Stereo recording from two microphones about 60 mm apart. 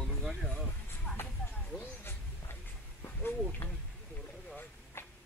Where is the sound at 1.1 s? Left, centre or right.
Left.